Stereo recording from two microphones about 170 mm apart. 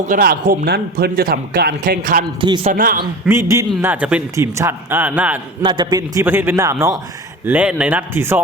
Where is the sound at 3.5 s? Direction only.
15° right (ahead or behind).